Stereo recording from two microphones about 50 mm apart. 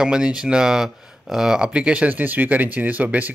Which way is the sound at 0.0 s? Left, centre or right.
Centre.